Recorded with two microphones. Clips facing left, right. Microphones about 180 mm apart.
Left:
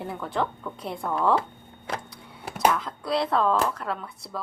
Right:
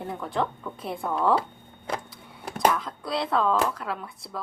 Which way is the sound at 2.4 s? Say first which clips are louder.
Even; 5° left (ahead or behind).